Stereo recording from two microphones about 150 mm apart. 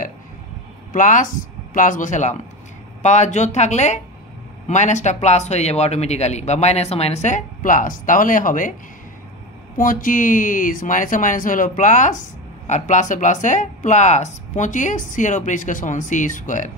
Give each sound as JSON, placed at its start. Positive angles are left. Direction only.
{"t": 0.9, "sound": "speech", "side_deg": 60}
{"t": 9.8, "sound": "speech", "side_deg": 65}